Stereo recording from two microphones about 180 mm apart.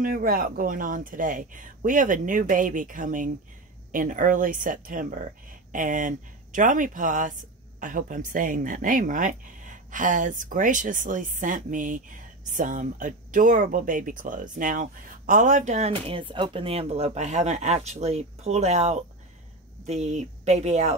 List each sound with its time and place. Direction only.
0.0 s speech: 50° right (ahead or behind)